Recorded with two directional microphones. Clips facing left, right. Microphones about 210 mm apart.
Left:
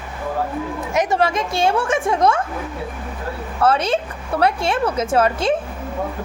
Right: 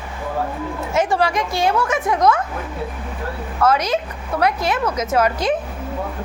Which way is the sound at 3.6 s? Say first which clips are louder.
Even; 30° left (ahead or behind).